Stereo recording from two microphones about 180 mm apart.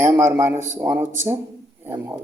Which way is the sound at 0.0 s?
15° right (ahead or behind).